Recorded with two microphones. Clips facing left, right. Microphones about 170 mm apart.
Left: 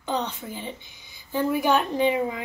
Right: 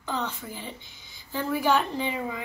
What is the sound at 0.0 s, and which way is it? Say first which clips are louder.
A woman's voice: left 3 dB; 20° left (ahead or behind).